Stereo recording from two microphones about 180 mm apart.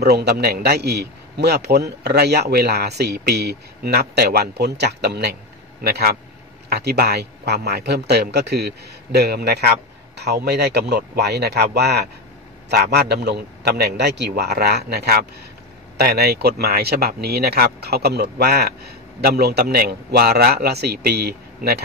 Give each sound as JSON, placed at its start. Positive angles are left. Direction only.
{"t": 0.0, "sound": "a man's voice", "side_deg": -65}